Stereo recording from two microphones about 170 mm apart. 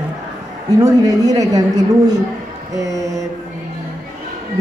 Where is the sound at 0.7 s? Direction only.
20° right (ahead or behind).